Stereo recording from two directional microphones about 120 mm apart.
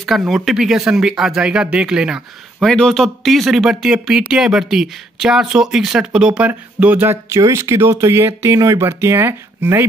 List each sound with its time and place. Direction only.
0.0 s speech: centre (ahead or behind)
2.7 s speech: 5° left (ahead or behind); by 9.8 s 20° right (ahead or behind)